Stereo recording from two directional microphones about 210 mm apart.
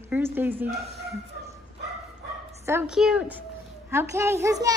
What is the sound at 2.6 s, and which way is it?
A woman's voice, 10° right (ahead or behind).